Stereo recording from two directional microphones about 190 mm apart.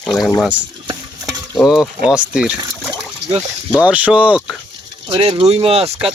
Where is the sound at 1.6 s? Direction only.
5° right (ahead or behind).